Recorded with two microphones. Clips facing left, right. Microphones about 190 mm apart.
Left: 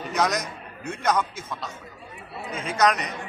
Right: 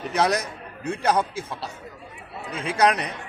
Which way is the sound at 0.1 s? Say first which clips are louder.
Right 2 dB; 30° right (ahead or behind).